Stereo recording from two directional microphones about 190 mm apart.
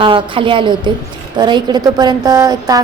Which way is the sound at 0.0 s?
25° right (ahead or behind).